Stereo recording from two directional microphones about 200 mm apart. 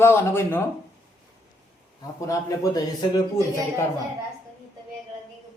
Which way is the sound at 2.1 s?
15° left (ahead or behind).